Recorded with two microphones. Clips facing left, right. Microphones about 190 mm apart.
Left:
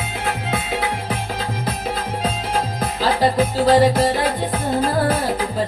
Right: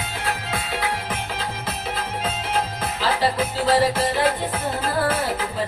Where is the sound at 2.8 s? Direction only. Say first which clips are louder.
Left 6 dB; 40° left (ahead or behind).